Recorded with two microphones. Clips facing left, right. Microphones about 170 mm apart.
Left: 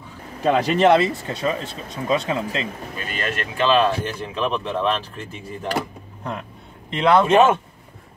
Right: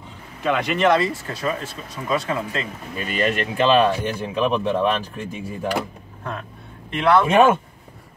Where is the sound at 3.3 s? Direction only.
15° right (ahead or behind).